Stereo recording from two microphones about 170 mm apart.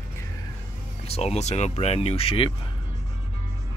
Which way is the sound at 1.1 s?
40° left (ahead or behind).